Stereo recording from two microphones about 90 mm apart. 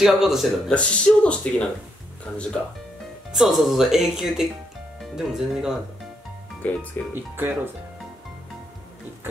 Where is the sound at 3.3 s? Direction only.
5° right (ahead or behind).